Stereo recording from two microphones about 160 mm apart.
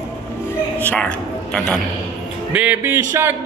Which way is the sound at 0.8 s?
10° left (ahead or behind).